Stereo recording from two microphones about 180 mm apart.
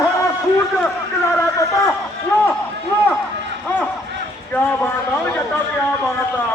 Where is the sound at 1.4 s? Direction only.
15° left (ahead or behind).